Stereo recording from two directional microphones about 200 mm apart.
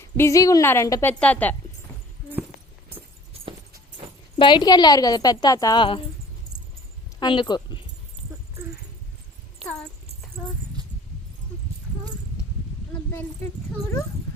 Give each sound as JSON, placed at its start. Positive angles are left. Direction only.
{"t": 0.0, "sound": "a woman's voice", "side_deg": 15}
{"t": 4.4, "sound": "a woman's voice", "side_deg": 25}
{"t": 7.2, "sound": "speech", "side_deg": 20}